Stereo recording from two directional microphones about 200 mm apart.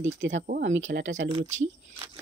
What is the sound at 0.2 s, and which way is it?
Speech, 65° right (ahead or behind).